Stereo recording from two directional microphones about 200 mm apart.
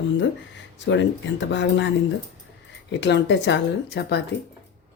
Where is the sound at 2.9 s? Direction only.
60° left (ahead or behind).